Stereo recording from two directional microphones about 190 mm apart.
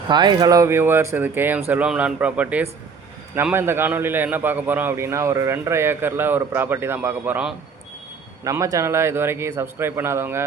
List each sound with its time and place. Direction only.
0.1 s a man's voice: 25° right (ahead or behind)